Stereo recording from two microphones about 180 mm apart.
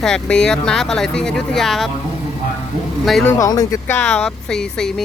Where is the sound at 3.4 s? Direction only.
20° left (ahead or behind).